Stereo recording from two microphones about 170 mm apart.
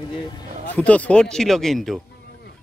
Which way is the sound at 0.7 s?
10° left (ahead or behind).